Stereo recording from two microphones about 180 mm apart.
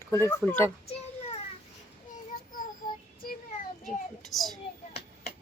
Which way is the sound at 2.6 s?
50° left (ahead or behind).